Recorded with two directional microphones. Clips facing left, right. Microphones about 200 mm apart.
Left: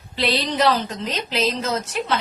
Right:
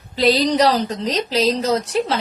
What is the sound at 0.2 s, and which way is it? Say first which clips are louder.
A woman's voice: right 6 dB; 40° right (ahead or behind).